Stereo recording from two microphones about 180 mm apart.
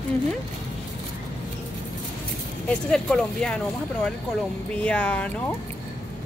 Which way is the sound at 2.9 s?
5° left (ahead or behind).